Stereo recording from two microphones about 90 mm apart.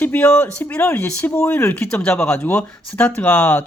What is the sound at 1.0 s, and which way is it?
Speech, 30° left (ahead or behind).